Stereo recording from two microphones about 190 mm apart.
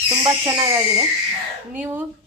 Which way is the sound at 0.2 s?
15° right (ahead or behind).